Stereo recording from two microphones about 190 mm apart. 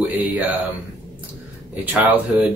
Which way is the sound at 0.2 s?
10° right (ahead or behind).